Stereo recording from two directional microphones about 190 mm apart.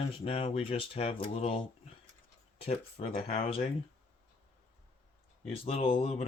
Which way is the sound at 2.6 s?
30° left (ahead or behind).